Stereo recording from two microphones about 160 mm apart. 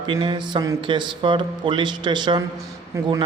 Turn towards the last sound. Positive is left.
turn(degrees=-25)  # may be behind; listen again after turning